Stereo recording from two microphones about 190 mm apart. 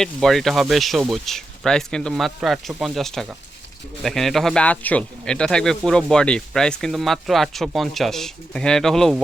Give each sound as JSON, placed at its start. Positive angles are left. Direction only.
{"t": 0.0, "sound": "speech", "side_deg": 0}